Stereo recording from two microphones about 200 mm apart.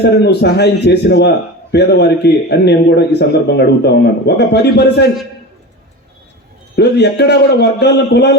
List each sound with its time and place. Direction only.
0.0 s speech: 55° left (ahead or behind)
6.7 s speech: 55° left (ahead or behind)